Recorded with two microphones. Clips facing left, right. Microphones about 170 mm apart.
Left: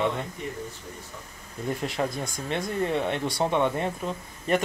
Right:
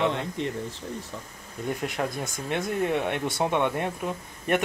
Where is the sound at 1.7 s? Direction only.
Centre (ahead or behind).